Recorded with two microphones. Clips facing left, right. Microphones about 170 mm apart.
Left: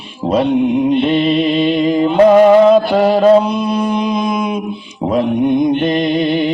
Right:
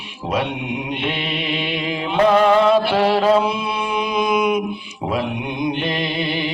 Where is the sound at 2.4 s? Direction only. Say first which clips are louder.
Left 7 dB; 40° left (ahead or behind).